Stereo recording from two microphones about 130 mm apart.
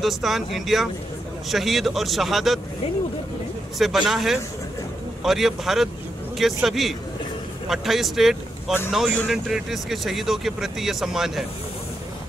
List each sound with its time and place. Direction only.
0.0 s speech: centre (ahead or behind)
3.7 s speech: centre (ahead or behind)